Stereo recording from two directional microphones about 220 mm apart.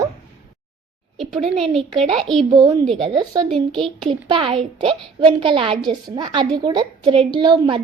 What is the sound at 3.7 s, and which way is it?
Speech, centre (ahead or behind).